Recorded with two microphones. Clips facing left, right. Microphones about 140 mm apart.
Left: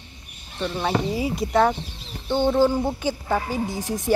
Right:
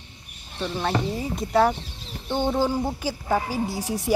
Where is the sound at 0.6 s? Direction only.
Centre (ahead or behind).